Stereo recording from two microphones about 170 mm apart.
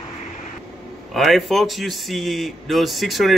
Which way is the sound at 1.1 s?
Centre (ahead or behind).